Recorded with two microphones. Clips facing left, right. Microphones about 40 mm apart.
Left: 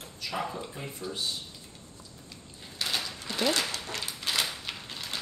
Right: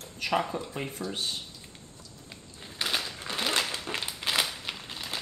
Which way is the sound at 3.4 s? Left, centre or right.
Right.